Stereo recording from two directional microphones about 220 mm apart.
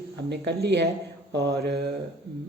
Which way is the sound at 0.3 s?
50° right (ahead or behind).